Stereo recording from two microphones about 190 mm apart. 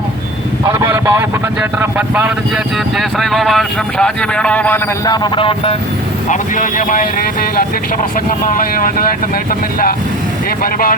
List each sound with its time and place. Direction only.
0.6 s a man's voice: 15° right (ahead or behind); by 4.8 s 5° left (ahead or behind)
5.0 s speech: 20° left (ahead or behind)
6.2 s speech: 40° left (ahead or behind)
8.4 s speech: 45° left (ahead or behind)
10.6 s speech: 50° left (ahead or behind)